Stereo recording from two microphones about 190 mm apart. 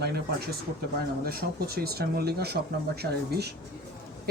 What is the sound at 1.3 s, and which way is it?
Speech, 55° right (ahead or behind).